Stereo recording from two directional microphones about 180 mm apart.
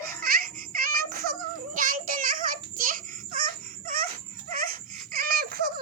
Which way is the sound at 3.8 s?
50° right (ahead or behind).